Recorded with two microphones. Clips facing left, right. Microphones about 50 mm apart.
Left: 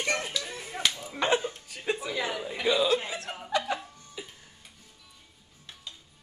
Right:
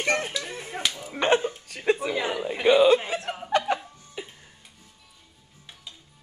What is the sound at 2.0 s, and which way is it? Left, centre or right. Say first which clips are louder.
Speech: right 5 dB; right.